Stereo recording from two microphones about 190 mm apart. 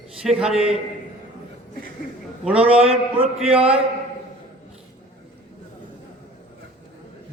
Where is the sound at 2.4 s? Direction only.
5° right (ahead or behind).